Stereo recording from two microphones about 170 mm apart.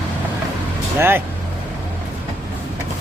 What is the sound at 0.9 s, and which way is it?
Speech, 15° right (ahead or behind).